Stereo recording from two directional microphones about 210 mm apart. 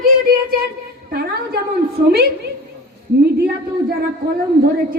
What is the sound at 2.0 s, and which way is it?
Speech, 45° right (ahead or behind).